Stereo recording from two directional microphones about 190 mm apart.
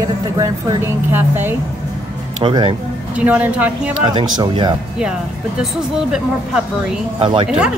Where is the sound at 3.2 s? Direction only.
10° right (ahead or behind).